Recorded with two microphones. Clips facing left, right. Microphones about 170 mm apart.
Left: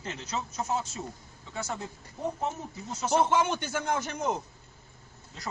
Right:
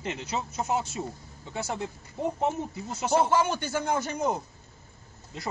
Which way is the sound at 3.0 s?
10° right (ahead or behind).